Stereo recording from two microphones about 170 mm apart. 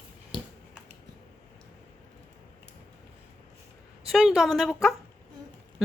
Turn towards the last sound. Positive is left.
turn(degrees=0)  # may be behind; listen again after turning